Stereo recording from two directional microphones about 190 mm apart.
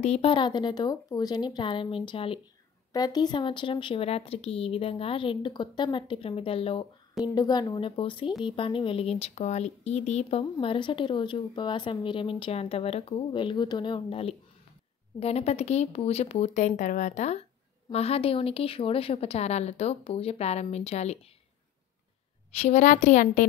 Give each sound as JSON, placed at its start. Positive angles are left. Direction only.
{"t": 0.0, "sound": "speech", "side_deg": 30}
{"t": 22.6, "sound": "speech", "side_deg": 40}